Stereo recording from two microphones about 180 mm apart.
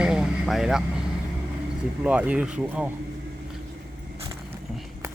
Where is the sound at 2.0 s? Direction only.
5° right (ahead or behind).